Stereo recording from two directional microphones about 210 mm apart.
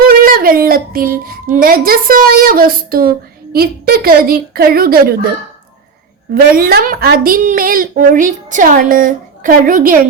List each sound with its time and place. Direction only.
0.0 s child singing: 45° right (ahead or behind)
3.5 s a woman's voice: 45° right (ahead or behind)
6.3 s a woman's voice: 45° right (ahead or behind)